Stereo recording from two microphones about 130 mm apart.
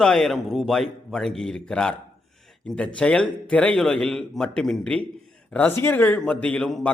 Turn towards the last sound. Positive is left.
turn(degrees=10)  # may be behind; listen again after turning